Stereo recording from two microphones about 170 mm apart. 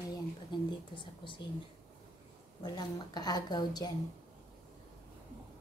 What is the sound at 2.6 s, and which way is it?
A woman's voice, 25° left (ahead or behind).